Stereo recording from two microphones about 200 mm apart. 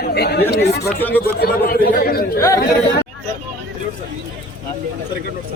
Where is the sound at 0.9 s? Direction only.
10° left (ahead or behind).